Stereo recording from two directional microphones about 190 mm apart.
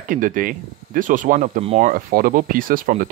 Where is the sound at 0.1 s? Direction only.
45° right (ahead or behind).